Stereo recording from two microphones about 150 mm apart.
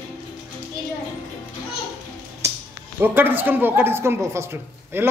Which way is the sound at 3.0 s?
15° right (ahead or behind).